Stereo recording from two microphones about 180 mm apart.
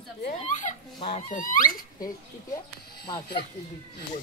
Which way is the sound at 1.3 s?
50° left (ahead or behind).